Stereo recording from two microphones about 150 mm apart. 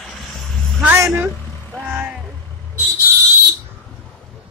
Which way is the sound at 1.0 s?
15° right (ahead or behind).